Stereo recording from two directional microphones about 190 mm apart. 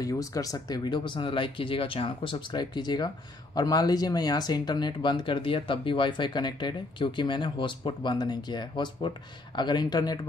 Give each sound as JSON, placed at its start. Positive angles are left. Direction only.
{"t": 0.0, "sound": "speech", "side_deg": 15}